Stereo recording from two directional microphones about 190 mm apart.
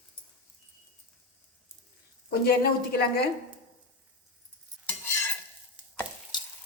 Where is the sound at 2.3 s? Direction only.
55° left (ahead or behind).